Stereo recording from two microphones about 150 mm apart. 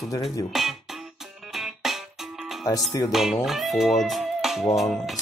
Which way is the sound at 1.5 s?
Centre (ahead or behind).